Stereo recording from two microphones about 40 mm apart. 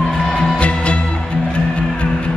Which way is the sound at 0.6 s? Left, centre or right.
Left.